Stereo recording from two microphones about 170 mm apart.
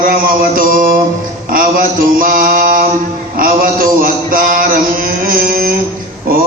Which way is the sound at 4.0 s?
55° right (ahead or behind).